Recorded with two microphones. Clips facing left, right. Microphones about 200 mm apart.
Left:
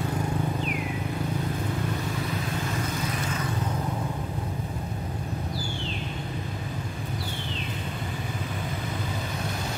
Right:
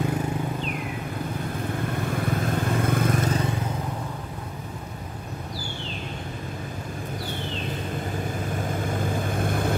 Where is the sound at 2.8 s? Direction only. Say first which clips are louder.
Right 7 dB; 55° right (ahead or behind).